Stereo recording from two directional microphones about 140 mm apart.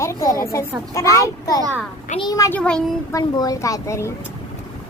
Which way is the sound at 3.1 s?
25° left (ahead or behind).